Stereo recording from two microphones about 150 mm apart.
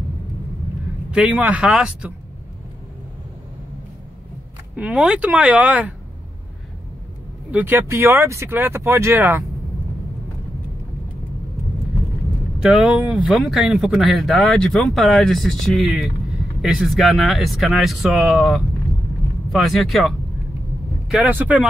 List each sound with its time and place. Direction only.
1.1 s speech: 10° right (ahead or behind)
4.7 s speech: 10° right (ahead or behind)
7.5 s speech: 15° right (ahead or behind)
12.5 s speech: 5° right (ahead or behind)
21.1 s speech: 10° right (ahead or behind)